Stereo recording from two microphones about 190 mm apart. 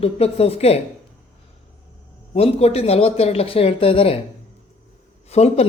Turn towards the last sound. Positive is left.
turn(degrees=35)  # may be behind; listen again after turning